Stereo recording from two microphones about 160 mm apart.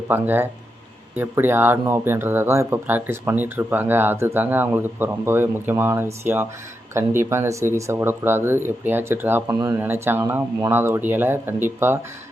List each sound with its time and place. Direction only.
0.1 s speech: 15° right (ahead or behind)